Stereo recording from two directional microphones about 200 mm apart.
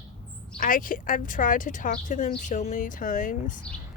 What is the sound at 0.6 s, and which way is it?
Speech, 45° left (ahead or behind).